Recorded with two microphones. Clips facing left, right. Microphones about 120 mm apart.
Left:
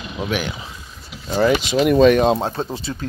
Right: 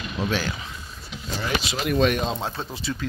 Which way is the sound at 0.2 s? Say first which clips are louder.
Left 3 dB; 15° left (ahead or behind).